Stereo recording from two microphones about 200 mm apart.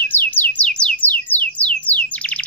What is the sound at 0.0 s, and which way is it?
Music, 10° left (ahead or behind).